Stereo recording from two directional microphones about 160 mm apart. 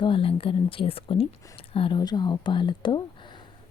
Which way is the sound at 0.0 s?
35° left (ahead or behind).